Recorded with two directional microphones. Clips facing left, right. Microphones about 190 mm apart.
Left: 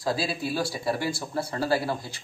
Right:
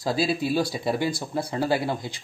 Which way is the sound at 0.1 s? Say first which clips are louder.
Right 5 dB; 25° right (ahead or behind).